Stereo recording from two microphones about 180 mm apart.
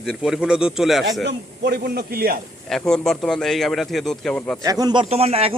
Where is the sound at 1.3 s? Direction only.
65° right (ahead or behind).